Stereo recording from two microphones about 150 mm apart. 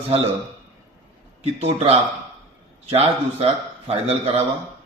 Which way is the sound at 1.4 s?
45° right (ahead or behind).